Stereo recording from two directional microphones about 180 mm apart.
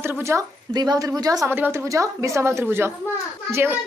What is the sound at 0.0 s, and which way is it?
A woman's voice, 15° right (ahead or behind).